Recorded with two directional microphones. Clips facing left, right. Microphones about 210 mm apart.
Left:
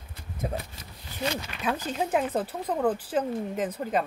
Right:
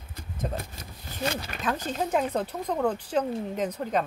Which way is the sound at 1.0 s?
45° right (ahead or behind).